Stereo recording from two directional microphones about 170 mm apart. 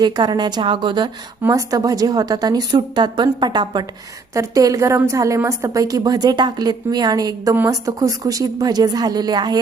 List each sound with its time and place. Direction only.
0.0 s a woman's voice: 25° right (ahead or behind)